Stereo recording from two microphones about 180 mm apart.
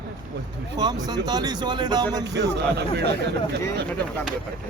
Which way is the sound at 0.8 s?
20° right (ahead or behind).